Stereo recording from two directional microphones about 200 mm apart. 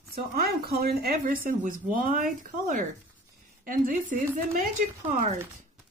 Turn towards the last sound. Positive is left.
turn(degrees=-35)  # may be behind; listen again after turning